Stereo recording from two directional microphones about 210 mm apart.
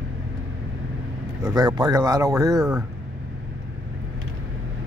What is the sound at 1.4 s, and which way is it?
Speech, 20° right (ahead or behind).